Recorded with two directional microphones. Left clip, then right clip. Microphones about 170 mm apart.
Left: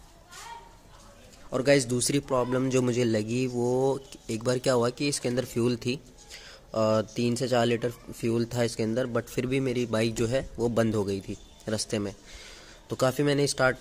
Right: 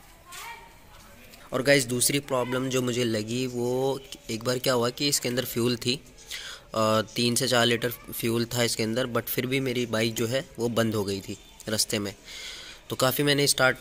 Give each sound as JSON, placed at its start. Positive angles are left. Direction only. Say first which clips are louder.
{"t": 1.5, "sound": "speech", "louder": "right 1 dB", "side_deg": 10}